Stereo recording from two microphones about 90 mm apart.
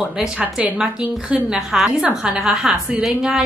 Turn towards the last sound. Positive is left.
turn(degrees=-10)  # may be behind; listen again after turning